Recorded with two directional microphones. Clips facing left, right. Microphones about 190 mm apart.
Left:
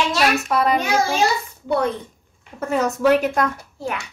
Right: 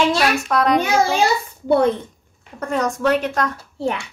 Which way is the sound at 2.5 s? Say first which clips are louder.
Left 1 dB; 5° left (ahead or behind).